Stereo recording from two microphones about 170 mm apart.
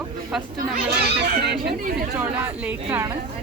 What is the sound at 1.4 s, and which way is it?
Speech, 80° right.